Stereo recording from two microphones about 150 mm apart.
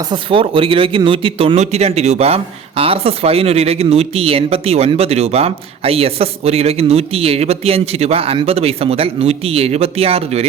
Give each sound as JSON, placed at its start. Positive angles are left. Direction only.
{"t": 0.1, "sound": "speech", "side_deg": -35}